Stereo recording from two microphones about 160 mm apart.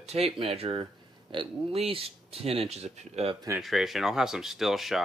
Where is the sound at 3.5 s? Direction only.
Centre (ahead or behind).